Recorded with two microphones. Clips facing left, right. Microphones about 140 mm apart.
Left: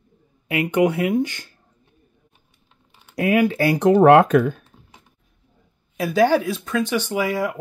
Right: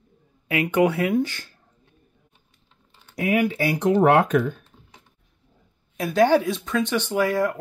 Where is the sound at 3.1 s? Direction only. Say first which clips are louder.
Left 4 dB; 90° left.